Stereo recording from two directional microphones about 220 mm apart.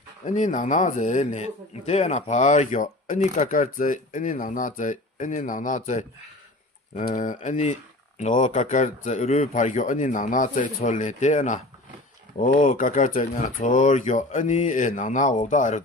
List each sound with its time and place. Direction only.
0.3 s speech: 35° left (ahead or behind)